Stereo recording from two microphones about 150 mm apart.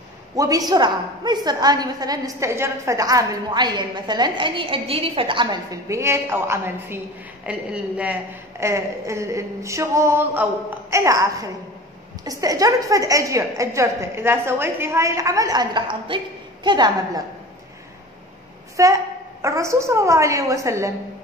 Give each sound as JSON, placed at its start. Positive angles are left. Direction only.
{"t": 0.4, "sound": "a woman's voice", "side_deg": -25}
{"t": 18.8, "sound": "a woman's voice", "side_deg": -20}